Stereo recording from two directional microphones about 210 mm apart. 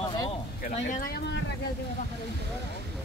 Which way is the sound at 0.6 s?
40° left (ahead or behind).